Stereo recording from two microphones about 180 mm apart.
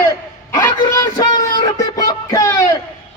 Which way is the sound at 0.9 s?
20° left (ahead or behind).